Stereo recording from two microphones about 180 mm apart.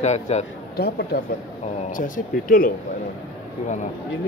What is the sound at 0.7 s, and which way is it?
Speech, 60° left (ahead or behind).